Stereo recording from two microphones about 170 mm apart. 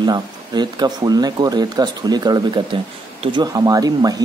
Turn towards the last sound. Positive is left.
turn(degrees=-20)  # may be behind; listen again after turning